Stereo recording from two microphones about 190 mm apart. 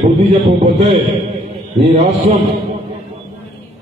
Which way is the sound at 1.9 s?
35° right (ahead or behind).